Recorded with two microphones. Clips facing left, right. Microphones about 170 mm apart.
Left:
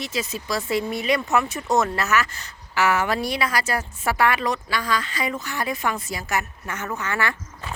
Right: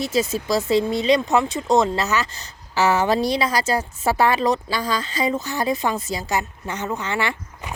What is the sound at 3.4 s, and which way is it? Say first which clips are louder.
A woman's voice: right 3 dB; 20° right (ahead or behind).